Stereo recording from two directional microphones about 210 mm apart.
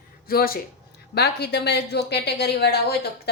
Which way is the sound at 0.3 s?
45° left (ahead or behind).